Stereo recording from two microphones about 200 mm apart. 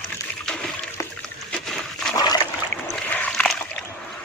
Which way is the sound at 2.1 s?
20° left (ahead or behind).